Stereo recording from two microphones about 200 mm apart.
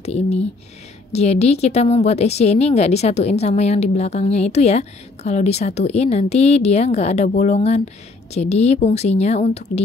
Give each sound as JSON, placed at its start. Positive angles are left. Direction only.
{"t": 0.0, "sound": "speech", "side_deg": 35}